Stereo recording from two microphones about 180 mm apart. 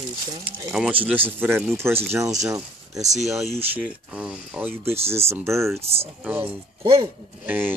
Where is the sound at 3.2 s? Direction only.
Centre (ahead or behind).